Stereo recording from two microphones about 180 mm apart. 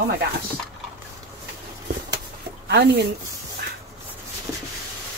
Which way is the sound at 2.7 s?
65° right (ahead or behind).